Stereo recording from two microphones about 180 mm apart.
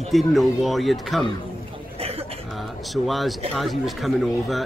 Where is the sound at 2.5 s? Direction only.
Centre (ahead or behind).